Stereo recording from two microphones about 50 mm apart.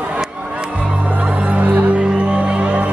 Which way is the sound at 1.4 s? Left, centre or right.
Right.